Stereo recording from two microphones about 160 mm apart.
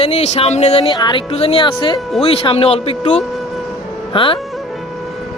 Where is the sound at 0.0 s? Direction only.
40° left (ahead or behind).